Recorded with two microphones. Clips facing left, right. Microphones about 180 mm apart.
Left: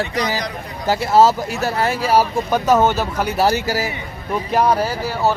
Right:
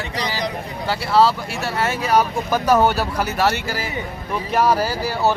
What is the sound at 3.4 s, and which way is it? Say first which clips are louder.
Speech: left 5 dB; 40° left (ahead or behind).